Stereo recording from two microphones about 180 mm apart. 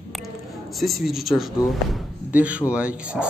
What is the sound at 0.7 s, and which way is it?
Speech, centre (ahead or behind).